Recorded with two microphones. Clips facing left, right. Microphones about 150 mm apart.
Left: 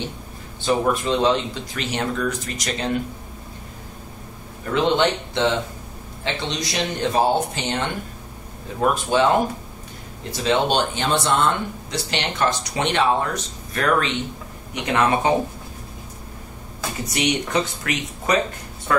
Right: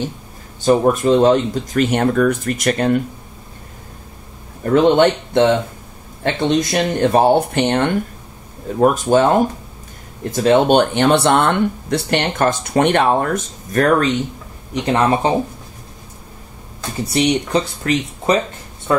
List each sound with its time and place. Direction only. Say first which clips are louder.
0.6 s speech: right 7 dB; 45° right (ahead or behind)
4.7 s speech: right 7 dB; 50° right (ahead or behind)
8.8 s speech: right 5 dB; 45° right (ahead or behind)
14.7 s speech: right 4 dB; 35° right (ahead or behind)
17.0 s speech: right 7 dB; 30° right (ahead or behind)